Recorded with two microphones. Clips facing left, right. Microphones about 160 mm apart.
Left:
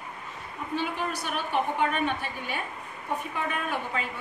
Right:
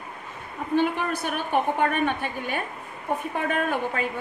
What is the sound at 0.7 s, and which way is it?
A woman's voice, 50° right (ahead or behind).